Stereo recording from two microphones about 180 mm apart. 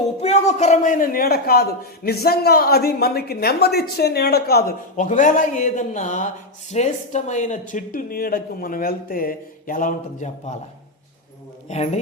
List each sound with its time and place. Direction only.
0.2 s a man's voice: 35° left (ahead or behind); by 4.7 s 60° left (ahead or behind)
4.9 s a man's voice: 45° left (ahead or behind)
11.7 s a woman's voice: 40° left (ahead or behind)